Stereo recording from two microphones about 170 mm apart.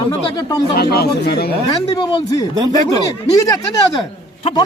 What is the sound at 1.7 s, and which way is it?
Speech, 30° left (ahead or behind).